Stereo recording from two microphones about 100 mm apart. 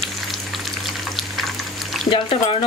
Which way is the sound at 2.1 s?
60° left (ahead or behind).